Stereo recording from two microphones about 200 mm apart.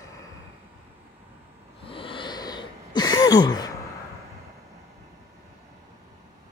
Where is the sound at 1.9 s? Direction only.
25° left (ahead or behind).